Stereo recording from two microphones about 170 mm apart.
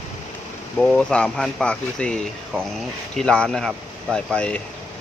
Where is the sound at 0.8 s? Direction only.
5° left (ahead or behind).